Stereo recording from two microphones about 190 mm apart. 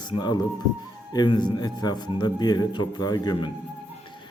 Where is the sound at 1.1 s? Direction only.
25° left (ahead or behind).